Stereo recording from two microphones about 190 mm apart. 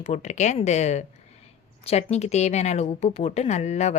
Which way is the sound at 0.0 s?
35° left (ahead or behind).